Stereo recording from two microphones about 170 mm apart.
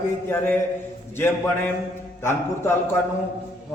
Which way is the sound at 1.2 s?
15° left (ahead or behind).